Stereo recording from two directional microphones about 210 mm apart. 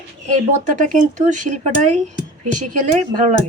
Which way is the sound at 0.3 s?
35° right (ahead or behind).